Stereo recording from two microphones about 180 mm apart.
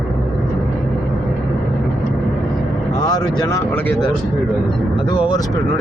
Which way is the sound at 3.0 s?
25° left (ahead or behind).